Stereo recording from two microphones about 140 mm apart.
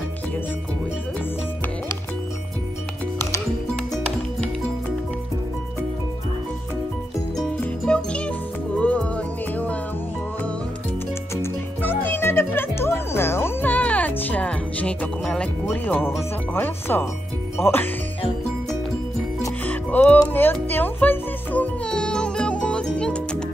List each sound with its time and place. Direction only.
7.6 s music: 10° left (ahead or behind)
11.4 s music: 15° left (ahead or behind)
15.7 s speech: 15° left (ahead or behind)
19.6 s music: 10° left (ahead or behind)